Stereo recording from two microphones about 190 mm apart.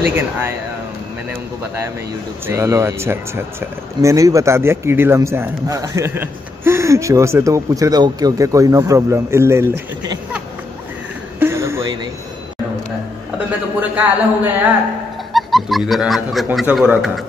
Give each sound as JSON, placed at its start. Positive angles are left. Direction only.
{"t": 2.4, "sound": "a man's voice", "side_deg": -15}
{"t": 11.3, "sound": "a sound", "side_deg": -15}
{"t": 13.7, "sound": "a man's voice", "side_deg": -10}
{"t": 15.3, "sound": "music", "side_deg": 0}
{"t": 16.5, "sound": "a man's voice", "side_deg": -5}